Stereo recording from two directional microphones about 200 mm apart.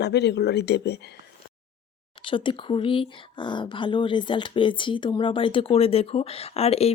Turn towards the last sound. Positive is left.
turn(degrees=30)  # may be behind; listen again after turning